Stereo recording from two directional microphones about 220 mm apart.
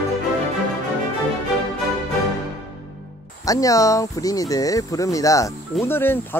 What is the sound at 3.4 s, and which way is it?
Speech, 15° left (ahead or behind).